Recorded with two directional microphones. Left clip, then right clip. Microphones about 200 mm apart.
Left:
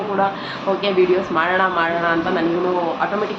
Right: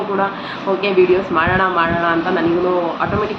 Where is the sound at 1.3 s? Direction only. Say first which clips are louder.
Right 2 dB; 5° right (ahead or behind).